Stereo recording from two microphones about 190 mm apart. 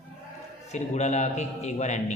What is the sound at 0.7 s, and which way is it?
A man's voice, 35° left (ahead or behind).